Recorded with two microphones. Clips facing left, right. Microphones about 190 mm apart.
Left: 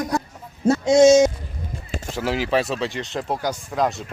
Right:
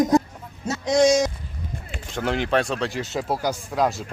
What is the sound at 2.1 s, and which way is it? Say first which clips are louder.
Speech: even; 5° left (ahead or behind).